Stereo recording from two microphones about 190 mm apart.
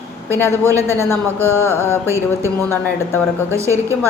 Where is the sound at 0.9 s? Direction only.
15° left (ahead or behind).